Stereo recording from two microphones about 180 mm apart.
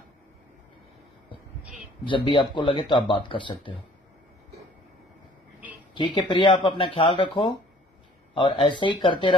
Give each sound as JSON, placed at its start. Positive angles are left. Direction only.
{"t": 2.0, "sound": "speech", "side_deg": 30}
{"t": 5.9, "sound": "speech", "side_deg": 25}